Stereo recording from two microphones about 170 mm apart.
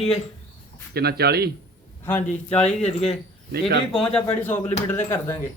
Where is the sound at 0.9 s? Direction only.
70° right (ahead or behind).